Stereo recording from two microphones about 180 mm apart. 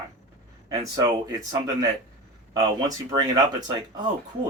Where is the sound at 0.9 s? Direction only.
20° right (ahead or behind).